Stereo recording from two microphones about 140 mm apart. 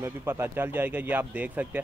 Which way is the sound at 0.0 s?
20° right (ahead or behind).